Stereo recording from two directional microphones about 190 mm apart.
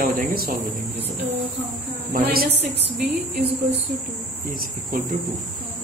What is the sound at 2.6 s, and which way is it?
Speech, 60° right (ahead or behind).